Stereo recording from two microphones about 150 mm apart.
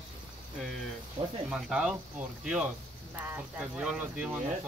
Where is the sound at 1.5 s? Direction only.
5° right (ahead or behind).